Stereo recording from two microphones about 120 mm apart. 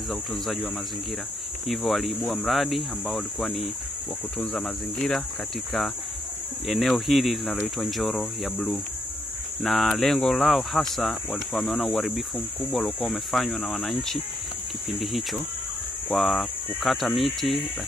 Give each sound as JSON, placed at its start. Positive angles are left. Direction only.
{"t": 0.1, "sound": "speech", "side_deg": 0}
{"t": 1.7, "sound": "speech", "side_deg": 0}
{"t": 6.7, "sound": "speech", "side_deg": 0}